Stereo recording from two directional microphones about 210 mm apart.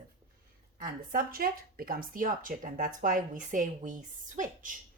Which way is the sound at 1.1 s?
45° right (ahead or behind).